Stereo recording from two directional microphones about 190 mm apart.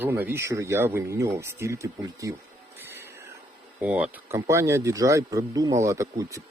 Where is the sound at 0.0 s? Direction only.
10° right (ahead or behind).